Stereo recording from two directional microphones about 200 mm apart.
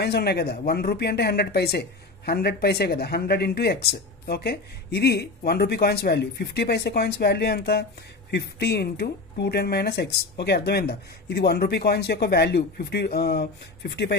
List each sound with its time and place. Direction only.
0.0 s speech: 55° left (ahead or behind)